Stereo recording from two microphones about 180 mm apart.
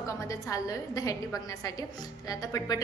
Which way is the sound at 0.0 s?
15° left (ahead or behind).